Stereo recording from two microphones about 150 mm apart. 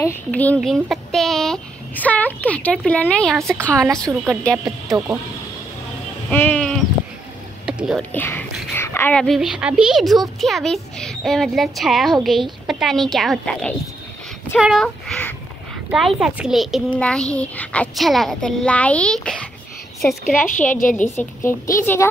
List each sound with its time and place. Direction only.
0.3 s a woman's voice: 10° left (ahead or behind)
6.3 s sheep: 10° left (ahead or behind)
7.6 s whispering: 5° right (ahead or behind)
8.1 s a woman's voice: 10° left (ahead or behind)
20.4 s a woman's voice: 60° left (ahead or behind)
20.9 s a woman's voice: 10° left (ahead or behind)